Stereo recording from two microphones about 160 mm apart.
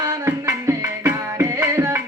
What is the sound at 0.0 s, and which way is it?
Music, 20° right (ahead or behind).